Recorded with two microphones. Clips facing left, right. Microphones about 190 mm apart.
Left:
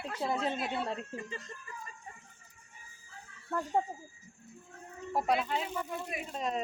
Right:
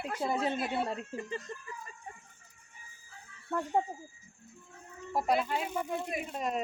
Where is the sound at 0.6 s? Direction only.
5° right (ahead or behind).